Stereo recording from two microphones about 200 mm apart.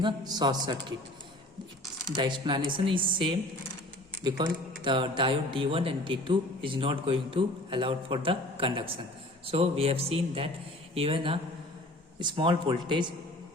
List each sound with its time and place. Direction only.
0.0 s speech: 20° right (ahead or behind)
2.1 s speech: 20° right (ahead or behind)